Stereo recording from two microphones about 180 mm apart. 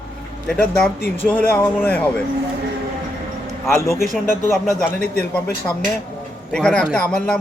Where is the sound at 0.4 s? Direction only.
5° left (ahead or behind).